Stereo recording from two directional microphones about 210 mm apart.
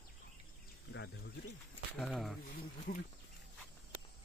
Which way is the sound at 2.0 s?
Centre (ahead or behind).